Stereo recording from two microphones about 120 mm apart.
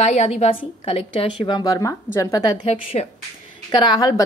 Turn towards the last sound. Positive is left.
turn(degrees=35)  # may be behind; listen again after turning